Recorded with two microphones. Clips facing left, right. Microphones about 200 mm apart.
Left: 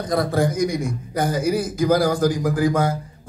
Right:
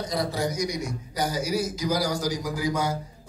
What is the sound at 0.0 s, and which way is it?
A man's voice, 55° left (ahead or behind).